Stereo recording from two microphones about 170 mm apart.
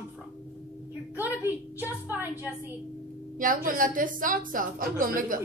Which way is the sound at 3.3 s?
50° right (ahead or behind).